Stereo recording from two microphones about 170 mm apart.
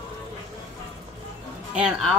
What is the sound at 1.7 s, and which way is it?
Speech, 5° right (ahead or behind).